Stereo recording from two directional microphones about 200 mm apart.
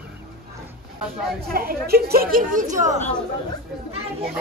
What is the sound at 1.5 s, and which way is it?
Speech, 45° right (ahead or behind).